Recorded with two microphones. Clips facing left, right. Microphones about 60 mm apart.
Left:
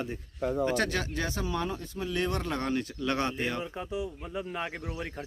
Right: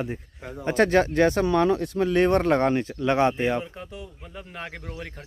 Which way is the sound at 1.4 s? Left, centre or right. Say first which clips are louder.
Right 12 dB; right.